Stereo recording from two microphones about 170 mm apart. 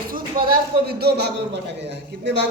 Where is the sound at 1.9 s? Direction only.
90° right.